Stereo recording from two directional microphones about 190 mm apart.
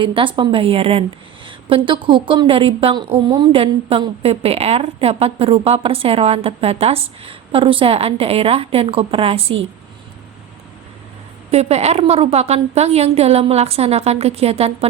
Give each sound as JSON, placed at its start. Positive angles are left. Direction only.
{"t": 0.0, "sound": "a woman's voice", "side_deg": -25}
{"t": 11.5, "sound": "a woman's voice", "side_deg": -35}